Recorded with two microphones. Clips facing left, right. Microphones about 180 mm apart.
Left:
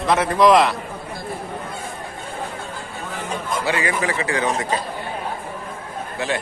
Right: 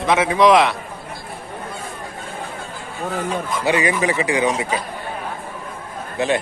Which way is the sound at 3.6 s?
20° right (ahead or behind).